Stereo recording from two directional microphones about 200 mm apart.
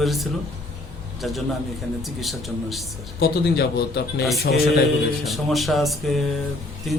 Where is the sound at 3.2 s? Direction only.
50° left (ahead or behind).